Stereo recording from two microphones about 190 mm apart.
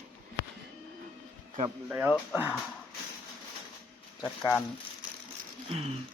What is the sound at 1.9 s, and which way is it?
Speech, 10° right (ahead or behind).